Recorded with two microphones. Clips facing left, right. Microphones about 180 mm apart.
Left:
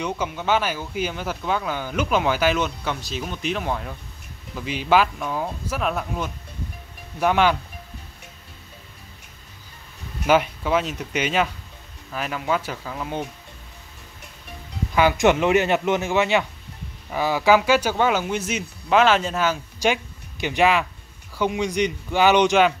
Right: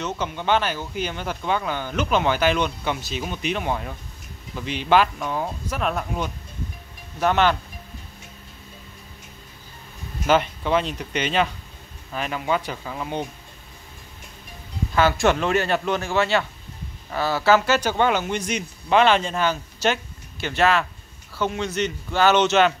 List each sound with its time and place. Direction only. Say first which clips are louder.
0.0 s speech: left 1 dB; 5° left (ahead or behind)
10.2 s speech: left 1 dB; 10° left (ahead or behind)
15.0 s speech: left 2 dB; 15° left (ahead or behind)